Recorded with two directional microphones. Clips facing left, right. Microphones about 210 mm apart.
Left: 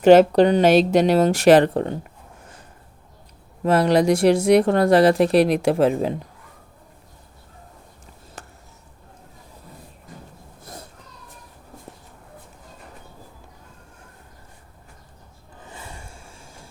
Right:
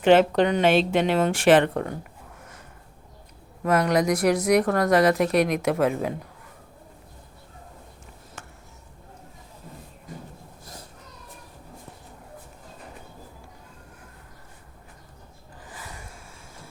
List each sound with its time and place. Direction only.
0.0 s speech: 40° left (ahead or behind)
3.6 s speech: 30° left (ahead or behind)
8.4 s a sound: 35° left (ahead or behind)
15.6 s rub: 25° left (ahead or behind)